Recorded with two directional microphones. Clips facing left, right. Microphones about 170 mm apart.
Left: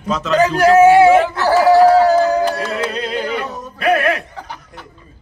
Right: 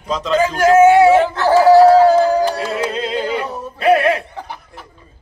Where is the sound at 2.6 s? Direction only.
10° right (ahead or behind).